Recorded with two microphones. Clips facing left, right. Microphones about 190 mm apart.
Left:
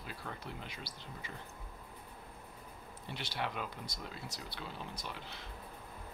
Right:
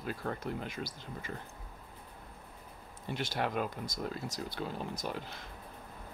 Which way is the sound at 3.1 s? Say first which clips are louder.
Right 6 dB; 45° right (ahead or behind).